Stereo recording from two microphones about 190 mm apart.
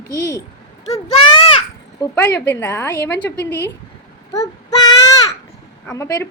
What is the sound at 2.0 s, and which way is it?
Speech, 15° left (ahead or behind).